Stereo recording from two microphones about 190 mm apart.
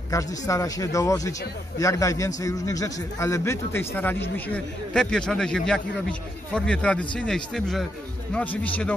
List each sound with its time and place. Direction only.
0.1 s a man's voice: 15° left (ahead or behind)